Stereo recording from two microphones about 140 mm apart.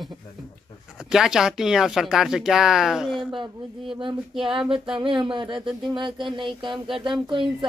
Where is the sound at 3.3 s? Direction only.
40° right (ahead or behind).